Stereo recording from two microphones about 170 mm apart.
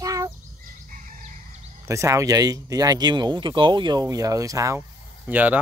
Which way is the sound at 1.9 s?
20° right (ahead or behind).